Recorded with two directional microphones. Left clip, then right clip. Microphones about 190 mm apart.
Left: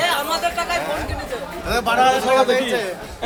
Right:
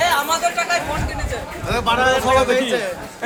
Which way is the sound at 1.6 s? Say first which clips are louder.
Left 1 dB; 40° left (ahead or behind).